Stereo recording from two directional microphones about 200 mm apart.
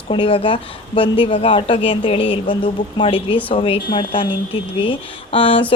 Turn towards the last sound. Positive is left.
turn(degrees=25)  # may be behind; listen again after turning